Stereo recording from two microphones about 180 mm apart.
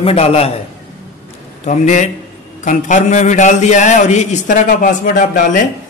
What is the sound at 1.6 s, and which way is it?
A man's voice, 40° left (ahead or behind).